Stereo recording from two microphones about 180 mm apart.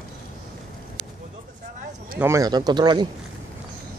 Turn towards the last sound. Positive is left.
turn(degrees=-25)  # may be behind; listen again after turning